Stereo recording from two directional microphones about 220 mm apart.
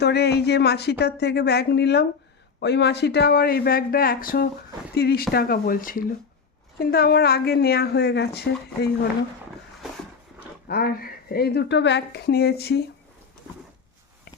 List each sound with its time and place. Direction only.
0.0 s a woman's voice: 50° left (ahead or behind)
10.7 s a woman's voice: 45° left (ahead or behind)